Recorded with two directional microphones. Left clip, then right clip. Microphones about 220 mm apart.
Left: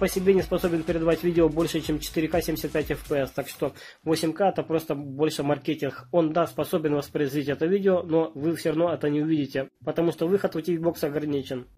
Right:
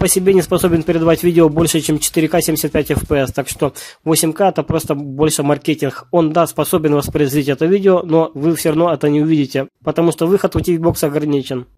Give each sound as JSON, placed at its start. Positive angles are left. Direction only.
{"t": 0.0, "sound": "speech", "side_deg": -45}